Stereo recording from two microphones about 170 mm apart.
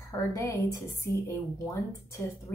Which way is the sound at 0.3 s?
20° left (ahead or behind).